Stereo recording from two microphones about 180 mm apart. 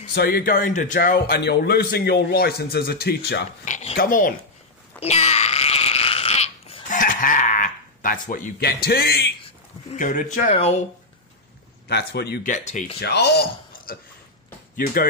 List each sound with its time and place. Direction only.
0.1 s a man's voice: 60° left (ahead or behind)
3.6 s a sound: 45° left (ahead or behind)
5.0 s a sound: 35° left (ahead or behind); by 9.3 s 60° left (ahead or behind)
9.8 s speech: 45° left (ahead or behind)
10.5 s speech: 35° left (ahead or behind)
11.9 s a man's voice: 65° left (ahead or behind)
12.4 s speech: 45° left (ahead or behind)
13.0 s speech: 70° left (ahead or behind)